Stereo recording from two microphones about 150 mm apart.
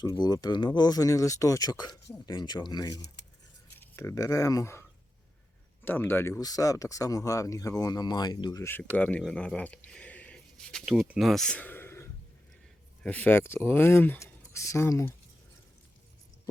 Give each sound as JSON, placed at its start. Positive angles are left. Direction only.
{"t": 0.0, "sound": "speech", "side_deg": 25}
{"t": 9.0, "sound": "speech", "side_deg": 10}